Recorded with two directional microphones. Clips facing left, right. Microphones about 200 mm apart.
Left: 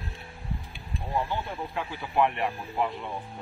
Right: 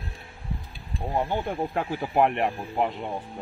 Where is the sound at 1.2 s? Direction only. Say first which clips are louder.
Right 5 dB; 50° right (ahead or behind).